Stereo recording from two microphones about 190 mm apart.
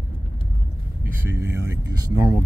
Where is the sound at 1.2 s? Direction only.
15° right (ahead or behind).